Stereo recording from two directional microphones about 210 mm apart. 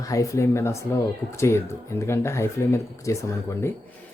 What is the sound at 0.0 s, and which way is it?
Speech, 15° left (ahead or behind).